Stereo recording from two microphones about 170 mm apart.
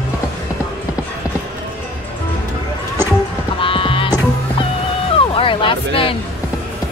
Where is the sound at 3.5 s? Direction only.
30° left (ahead or behind).